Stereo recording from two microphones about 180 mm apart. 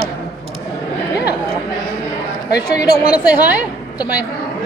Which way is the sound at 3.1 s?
10° right (ahead or behind).